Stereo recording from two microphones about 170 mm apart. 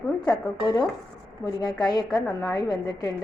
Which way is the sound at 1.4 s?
25° left (ahead or behind).